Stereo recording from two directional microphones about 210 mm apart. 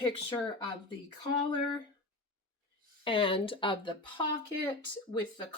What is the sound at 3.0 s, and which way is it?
Speech, 25° left (ahead or behind).